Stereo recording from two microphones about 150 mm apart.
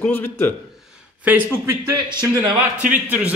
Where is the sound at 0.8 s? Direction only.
5° right (ahead or behind).